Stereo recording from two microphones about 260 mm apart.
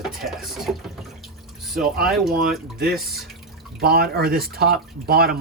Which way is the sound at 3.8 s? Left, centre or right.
Right.